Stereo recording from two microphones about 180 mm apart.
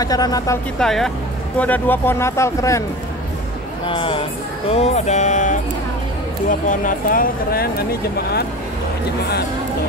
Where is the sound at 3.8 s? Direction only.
30° left (ahead or behind).